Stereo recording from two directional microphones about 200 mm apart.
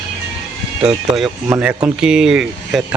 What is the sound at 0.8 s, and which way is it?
Speech, centre (ahead or behind).